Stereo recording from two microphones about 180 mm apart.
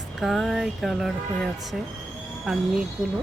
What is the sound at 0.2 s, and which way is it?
Speech, centre (ahead or behind).